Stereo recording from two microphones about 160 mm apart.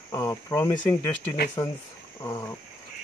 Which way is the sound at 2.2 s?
25° left (ahead or behind).